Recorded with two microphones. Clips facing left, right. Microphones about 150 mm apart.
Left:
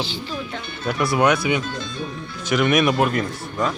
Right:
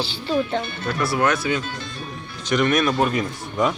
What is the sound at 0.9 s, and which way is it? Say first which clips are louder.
Speech: left 3 dB; 15° left (ahead or behind).